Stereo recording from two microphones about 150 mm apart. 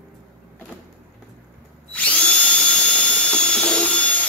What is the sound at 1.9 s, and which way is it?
Drill, 10° left (ahead or behind).